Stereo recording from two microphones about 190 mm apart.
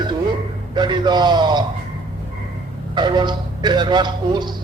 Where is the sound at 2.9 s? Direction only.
25° right (ahead or behind).